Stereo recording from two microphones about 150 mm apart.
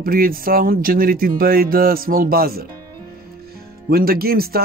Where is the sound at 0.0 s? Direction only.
75° right (ahead or behind).